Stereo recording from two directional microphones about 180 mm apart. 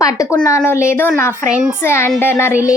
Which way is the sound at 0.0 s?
20° left (ahead or behind).